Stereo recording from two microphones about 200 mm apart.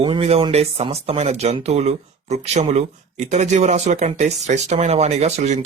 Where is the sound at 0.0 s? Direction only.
30° right (ahead or behind).